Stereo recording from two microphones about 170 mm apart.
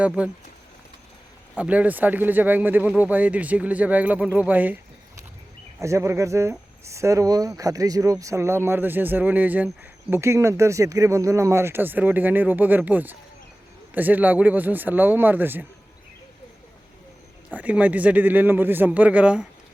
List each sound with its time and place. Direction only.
0.0 s speech: 5° right (ahead or behind)
1.5 s speech: 10° right (ahead or behind)
17.5 s speech: 10° right (ahead or behind)